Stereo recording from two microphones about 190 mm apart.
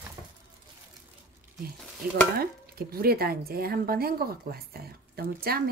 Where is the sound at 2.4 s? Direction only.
55° right (ahead or behind).